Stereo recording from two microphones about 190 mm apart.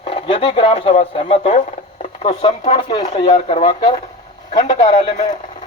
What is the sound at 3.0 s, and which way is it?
Speech, 40° left (ahead or behind).